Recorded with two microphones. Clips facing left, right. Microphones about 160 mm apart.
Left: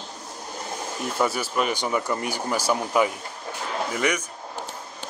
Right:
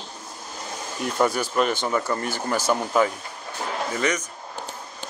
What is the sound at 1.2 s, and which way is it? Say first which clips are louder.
Speech: right 3 dB; 5° left (ahead or behind).